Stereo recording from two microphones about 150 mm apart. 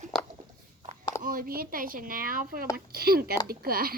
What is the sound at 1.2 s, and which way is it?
Speech, 65° right (ahead or behind).